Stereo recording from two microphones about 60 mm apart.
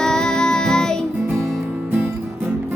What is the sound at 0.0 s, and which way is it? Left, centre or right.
Music, centre.